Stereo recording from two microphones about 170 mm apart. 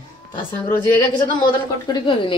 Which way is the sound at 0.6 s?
25° left (ahead or behind).